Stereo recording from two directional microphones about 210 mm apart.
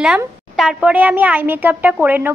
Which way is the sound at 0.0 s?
5° right (ahead or behind).